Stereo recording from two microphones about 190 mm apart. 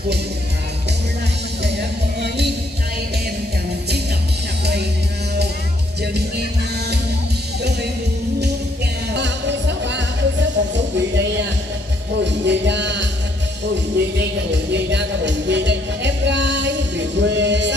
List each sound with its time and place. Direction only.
1.6 s music: 60° right (ahead or behind)
9.1 s music: 65° right (ahead or behind)